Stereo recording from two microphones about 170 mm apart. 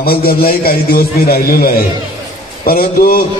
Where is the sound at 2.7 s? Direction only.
60° left (ahead or behind).